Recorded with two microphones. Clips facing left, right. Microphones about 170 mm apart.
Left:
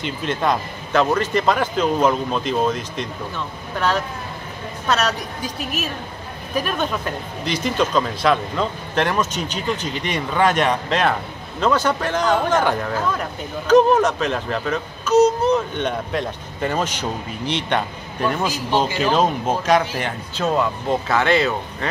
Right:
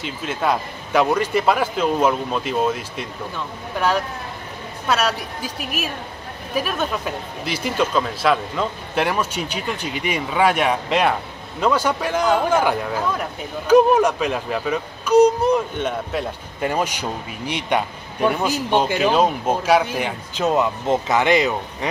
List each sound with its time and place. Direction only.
0.0 s speech: 5° right (ahead or behind)
18.9 s speech: 10° right (ahead or behind)